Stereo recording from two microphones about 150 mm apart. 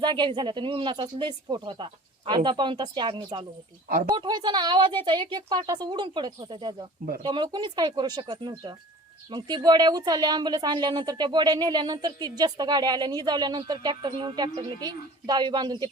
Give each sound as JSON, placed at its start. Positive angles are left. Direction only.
{"t": 0.0, "sound": "speech", "side_deg": -30}